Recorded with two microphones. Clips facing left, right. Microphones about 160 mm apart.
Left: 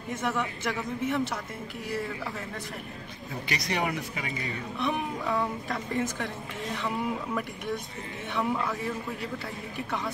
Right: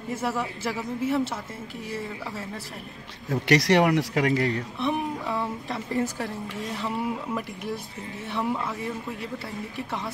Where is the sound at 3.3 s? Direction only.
80° right.